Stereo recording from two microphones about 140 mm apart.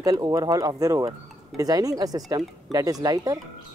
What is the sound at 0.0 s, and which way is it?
Speech, 25° right (ahead or behind).